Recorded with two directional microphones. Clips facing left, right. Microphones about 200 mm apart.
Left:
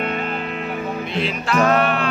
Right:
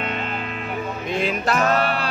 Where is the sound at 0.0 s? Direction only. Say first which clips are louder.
Left 4 dB; 45° left (ahead or behind).